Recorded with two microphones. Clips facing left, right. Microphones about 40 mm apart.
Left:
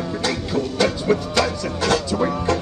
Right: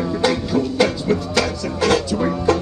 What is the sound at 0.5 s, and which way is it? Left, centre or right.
Music, centre.